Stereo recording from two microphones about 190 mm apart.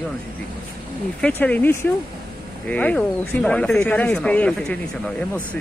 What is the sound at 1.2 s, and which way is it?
Speech, 10° left (ahead or behind).